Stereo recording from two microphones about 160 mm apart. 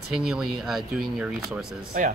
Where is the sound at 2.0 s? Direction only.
55° right (ahead or behind).